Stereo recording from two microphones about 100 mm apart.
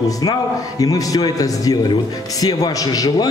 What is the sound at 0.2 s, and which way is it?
Speech, 40° left (ahead or behind).